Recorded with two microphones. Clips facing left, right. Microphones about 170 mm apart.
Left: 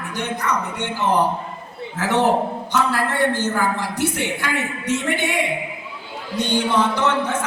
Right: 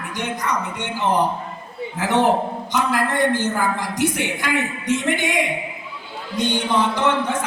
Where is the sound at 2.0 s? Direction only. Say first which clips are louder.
Even; 15° right (ahead or behind).